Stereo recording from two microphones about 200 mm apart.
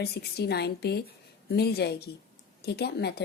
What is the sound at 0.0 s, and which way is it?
A woman's voice, 55° left (ahead or behind).